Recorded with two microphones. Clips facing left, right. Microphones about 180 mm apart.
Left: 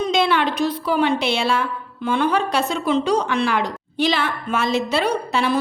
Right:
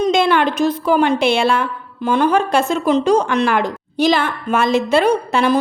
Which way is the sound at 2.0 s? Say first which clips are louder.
Right 4 dB; 45° right (ahead or behind).